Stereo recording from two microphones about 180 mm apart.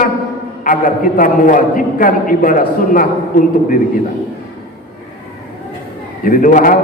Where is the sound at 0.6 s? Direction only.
50° left (ahead or behind).